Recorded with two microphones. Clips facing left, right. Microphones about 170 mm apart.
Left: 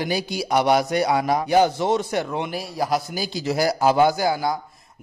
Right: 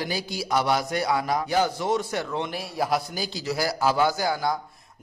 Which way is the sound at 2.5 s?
Centre (ahead or behind).